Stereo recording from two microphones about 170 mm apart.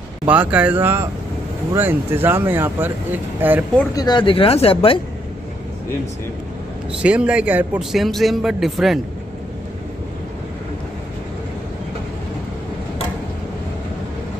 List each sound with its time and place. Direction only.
0.3 s speech: 10° right (ahead or behind)
3.9 s speech: 25° left (ahead or behind)
6.9 s a man's voice: 5° right (ahead or behind)